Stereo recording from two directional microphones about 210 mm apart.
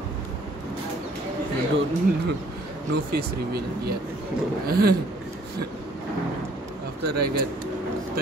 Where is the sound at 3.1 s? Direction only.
50° right (ahead or behind).